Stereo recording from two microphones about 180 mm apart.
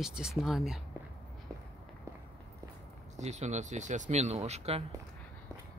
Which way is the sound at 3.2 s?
40° right (ahead or behind).